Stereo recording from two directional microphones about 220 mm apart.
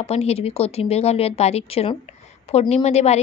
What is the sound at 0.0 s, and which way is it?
Speech, 30° left (ahead or behind).